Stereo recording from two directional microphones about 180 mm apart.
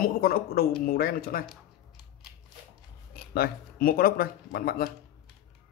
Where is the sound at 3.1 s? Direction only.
55° left (ahead or behind).